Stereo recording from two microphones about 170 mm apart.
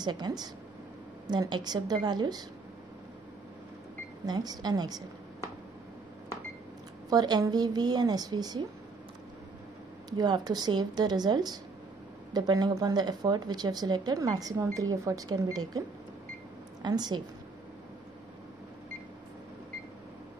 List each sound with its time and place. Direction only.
0.0 s speech: 25° right (ahead or behind)
4.3 s speech: 25° right (ahead or behind)
7.1 s speech: 25° right (ahead or behind)
10.0 s speech: 25° right (ahead or behind)
16.8 s speech: 25° right (ahead or behind)